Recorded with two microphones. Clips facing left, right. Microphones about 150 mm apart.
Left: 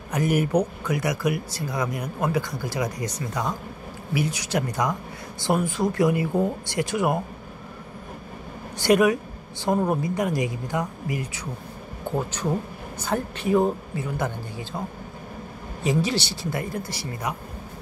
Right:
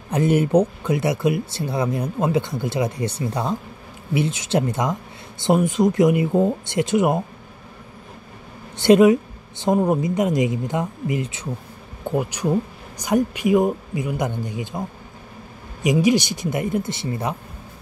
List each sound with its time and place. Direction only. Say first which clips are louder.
0.1 s speech: right 5 dB; 25° right (ahead or behind)
8.7 s speech: right 6 dB; 25° right (ahead or behind)
12.2 s speech: right 5 dB; 15° right (ahead or behind)
15.8 s speech: right 6 dB; 15° right (ahead or behind)